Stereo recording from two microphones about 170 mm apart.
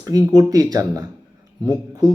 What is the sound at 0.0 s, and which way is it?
Speech, 20° right (ahead or behind).